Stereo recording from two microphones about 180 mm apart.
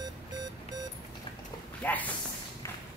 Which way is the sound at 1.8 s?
10° left (ahead or behind).